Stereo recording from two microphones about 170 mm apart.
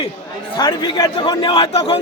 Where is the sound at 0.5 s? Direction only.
25° left (ahead or behind).